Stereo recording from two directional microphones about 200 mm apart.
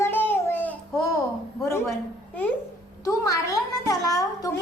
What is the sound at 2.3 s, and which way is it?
A child's voice, 10° left (ahead or behind).